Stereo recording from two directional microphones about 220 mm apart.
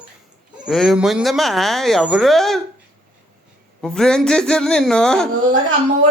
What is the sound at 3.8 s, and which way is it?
Speech, 5° left (ahead or behind).